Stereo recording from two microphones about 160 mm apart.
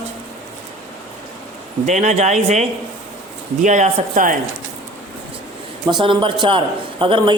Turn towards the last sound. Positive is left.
turn(degrees=-30)  # may be behind; listen again after turning